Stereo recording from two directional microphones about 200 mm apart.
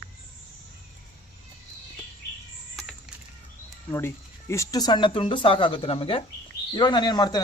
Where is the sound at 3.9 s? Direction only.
15° left (ahead or behind).